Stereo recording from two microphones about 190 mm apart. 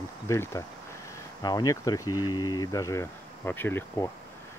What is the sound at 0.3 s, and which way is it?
Speech, 15° left (ahead or behind).